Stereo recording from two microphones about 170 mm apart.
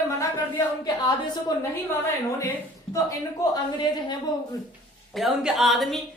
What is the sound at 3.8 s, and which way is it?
Speech, 25° left (ahead or behind).